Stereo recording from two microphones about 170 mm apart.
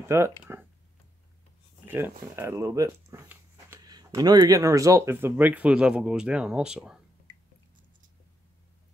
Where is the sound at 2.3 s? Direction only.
15° right (ahead or behind).